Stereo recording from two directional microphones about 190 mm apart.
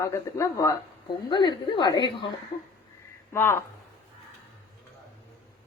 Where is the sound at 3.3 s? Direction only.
10° left (ahead or behind).